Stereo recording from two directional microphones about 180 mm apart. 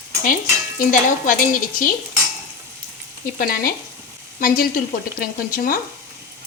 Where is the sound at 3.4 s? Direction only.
55° left (ahead or behind).